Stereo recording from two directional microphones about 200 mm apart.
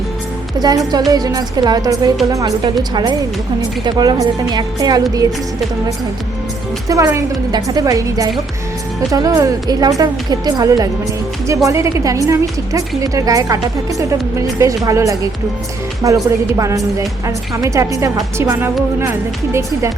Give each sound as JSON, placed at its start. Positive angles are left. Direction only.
{"t": 0.6, "sound": "a woman's voice", "side_deg": -20}
{"t": 6.8, "sound": "a woman's voice", "side_deg": -15}